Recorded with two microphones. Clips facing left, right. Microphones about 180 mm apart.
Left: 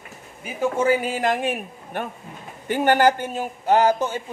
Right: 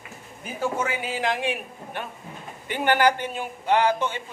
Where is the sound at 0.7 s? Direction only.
40° left (ahead or behind).